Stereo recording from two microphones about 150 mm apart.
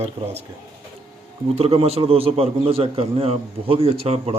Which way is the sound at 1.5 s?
45° right (ahead or behind).